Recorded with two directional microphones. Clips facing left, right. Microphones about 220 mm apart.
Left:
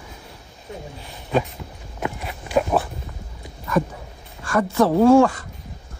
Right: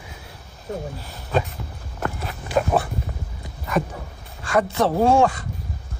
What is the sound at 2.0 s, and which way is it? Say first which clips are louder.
Walk: even; 10° left (ahead or behind).